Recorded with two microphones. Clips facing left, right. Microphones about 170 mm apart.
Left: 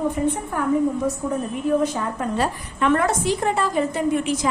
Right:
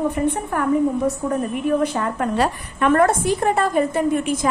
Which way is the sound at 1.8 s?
65° right (ahead or behind).